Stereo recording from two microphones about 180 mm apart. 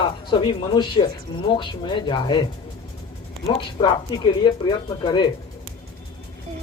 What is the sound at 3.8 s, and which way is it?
Speech, 35° left (ahead or behind).